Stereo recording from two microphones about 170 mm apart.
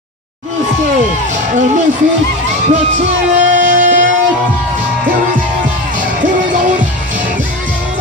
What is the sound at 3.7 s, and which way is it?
Music, 50° right (ahead or behind).